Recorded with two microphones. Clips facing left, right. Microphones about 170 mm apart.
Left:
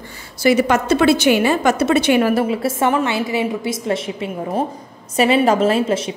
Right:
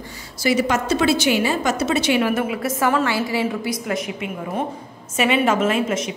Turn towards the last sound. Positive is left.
turn(degrees=30)  # may be behind; listen again after turning